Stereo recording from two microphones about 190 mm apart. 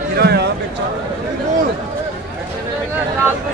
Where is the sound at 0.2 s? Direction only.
60° right (ahead or behind).